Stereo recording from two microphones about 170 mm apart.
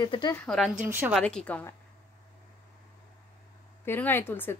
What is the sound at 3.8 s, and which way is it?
Speech, 15° left (ahead or behind).